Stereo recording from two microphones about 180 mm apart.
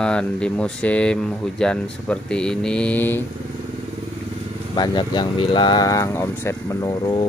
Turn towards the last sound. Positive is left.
turn(degrees=25)  # may be behind; listen again after turning